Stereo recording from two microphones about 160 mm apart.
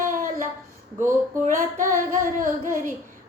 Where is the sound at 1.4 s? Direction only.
55° right (ahead or behind).